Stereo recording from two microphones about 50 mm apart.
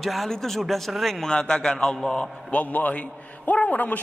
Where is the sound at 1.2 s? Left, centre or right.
Centre.